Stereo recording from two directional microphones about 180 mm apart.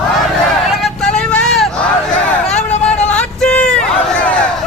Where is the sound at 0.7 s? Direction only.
Centre (ahead or behind).